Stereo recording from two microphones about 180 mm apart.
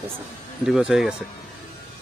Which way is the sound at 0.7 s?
5° right (ahead or behind).